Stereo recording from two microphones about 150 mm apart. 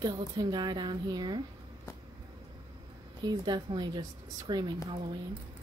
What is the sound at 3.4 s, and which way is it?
Speech, 30° right (ahead or behind).